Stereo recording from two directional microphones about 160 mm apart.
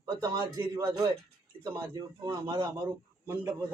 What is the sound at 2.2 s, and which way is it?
A man's voice, 25° right (ahead or behind).